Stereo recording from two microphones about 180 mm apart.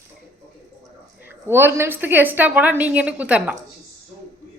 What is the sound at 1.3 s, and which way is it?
A woman's voice, 15° right (ahead or behind).